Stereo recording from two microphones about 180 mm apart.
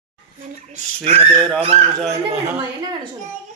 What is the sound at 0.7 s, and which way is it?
Speech, 35° right (ahead or behind).